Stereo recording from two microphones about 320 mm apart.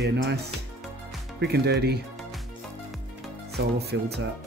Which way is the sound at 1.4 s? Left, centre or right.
Right.